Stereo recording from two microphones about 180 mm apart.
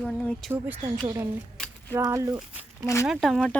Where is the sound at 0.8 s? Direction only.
20° right (ahead or behind).